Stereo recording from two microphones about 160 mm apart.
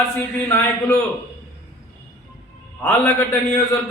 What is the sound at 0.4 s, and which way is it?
Speech, 15° left (ahead or behind).